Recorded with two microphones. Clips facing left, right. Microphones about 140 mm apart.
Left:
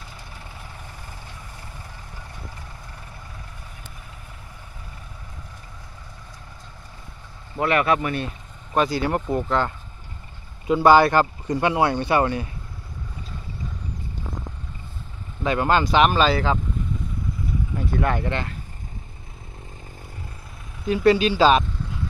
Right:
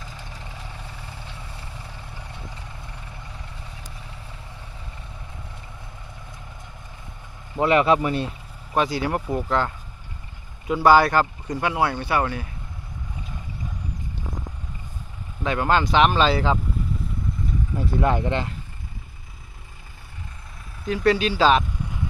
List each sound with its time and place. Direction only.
7.5 s speech: 20° right (ahead or behind)
9.3 s speech: 15° left (ahead or behind)
10.8 s speech: 20° left (ahead or behind)
15.4 s speech: 15° left (ahead or behind)
17.7 s speech: 15° right (ahead or behind)
20.8 s speech: 15° left (ahead or behind)